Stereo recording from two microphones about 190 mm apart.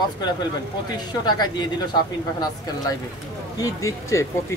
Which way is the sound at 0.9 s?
20° left (ahead or behind).